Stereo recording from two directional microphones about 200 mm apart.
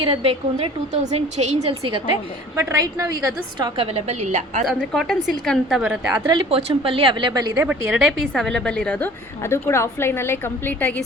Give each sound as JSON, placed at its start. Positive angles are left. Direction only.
{"t": 0.0, "sound": "a woman's voice", "side_deg": -25}
{"t": 2.6, "sound": "a woman's voice", "side_deg": -15}
{"t": 3.8, "sound": "a woman's voice", "side_deg": -30}
{"t": 4.6, "sound": "a woman's voice", "side_deg": 0}
{"t": 6.2, "sound": "a woman's voice", "side_deg": -30}
{"t": 7.6, "sound": "a woman's voice", "side_deg": -5}